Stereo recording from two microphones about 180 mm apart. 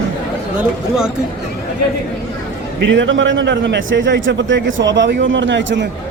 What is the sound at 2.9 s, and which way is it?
A man's voice, 90° right.